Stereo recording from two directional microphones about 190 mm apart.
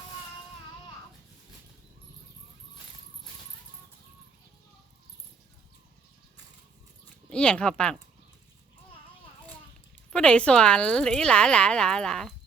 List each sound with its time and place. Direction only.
7.3 s speech: 5° left (ahead or behind)
10.1 s speech: 5° left (ahead or behind)